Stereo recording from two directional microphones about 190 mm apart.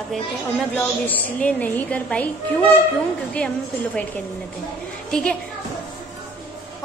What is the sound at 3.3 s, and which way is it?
A woman's voice, 5° left (ahead or behind).